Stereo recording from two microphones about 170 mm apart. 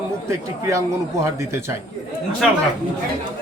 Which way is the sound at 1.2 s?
15° right (ahead or behind).